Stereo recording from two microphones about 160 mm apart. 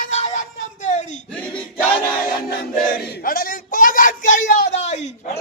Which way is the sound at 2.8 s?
60° left (ahead or behind).